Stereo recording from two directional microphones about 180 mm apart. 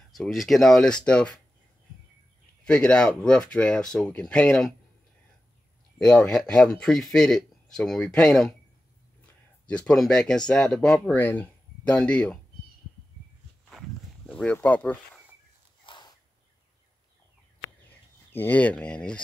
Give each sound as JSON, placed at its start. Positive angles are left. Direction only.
{"t": 0.1, "sound": "speech", "side_deg": 0}
{"t": 2.6, "sound": "speech", "side_deg": 5}
{"t": 5.9, "sound": "speech", "side_deg": 5}
{"t": 9.7, "sound": "speech", "side_deg": 5}
{"t": 14.2, "sound": "speech", "side_deg": 5}
{"t": 15.8, "sound": "a sound", "side_deg": 25}
{"t": 18.3, "sound": "speech", "side_deg": 10}